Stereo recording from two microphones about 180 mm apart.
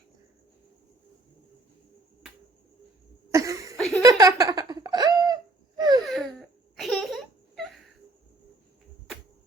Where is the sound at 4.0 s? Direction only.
20° right (ahead or behind).